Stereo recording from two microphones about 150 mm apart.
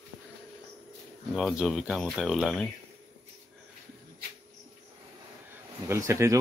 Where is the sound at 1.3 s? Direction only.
5° right (ahead or behind).